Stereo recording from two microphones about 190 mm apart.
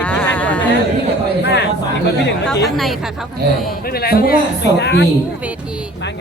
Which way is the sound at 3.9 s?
55° left (ahead or behind).